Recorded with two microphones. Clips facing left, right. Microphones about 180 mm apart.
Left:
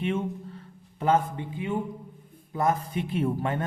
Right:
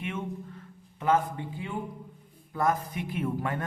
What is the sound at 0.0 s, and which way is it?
A man's voice, 30° left (ahead or behind).